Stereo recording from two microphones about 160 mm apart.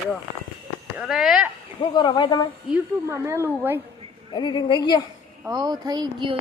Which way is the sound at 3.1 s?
15° right (ahead or behind).